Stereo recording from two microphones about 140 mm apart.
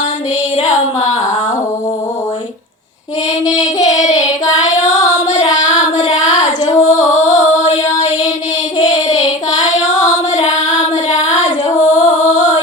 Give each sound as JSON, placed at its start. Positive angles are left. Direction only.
{"t": 0.5, "sound": "a sound", "side_deg": 60}
{"t": 3.9, "sound": "child singing", "side_deg": 25}
{"t": 5.7, "sound": "child singing", "side_deg": 60}
{"t": 6.1, "sound": "female singing", "side_deg": 60}
{"t": 8.8, "sound": "child singing", "side_deg": 25}
{"t": 9.2, "sound": "child singing", "side_deg": 60}
{"t": 11.9, "sound": "music", "side_deg": 60}